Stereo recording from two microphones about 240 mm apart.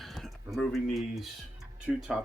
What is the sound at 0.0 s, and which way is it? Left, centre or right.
Speech, centre.